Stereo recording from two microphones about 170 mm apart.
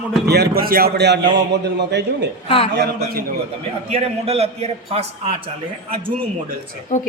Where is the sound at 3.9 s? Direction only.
35° right (ahead or behind).